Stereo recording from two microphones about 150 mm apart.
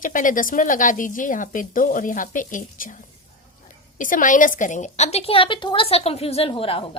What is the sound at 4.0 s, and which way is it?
A woman's voice, 60° left (ahead or behind).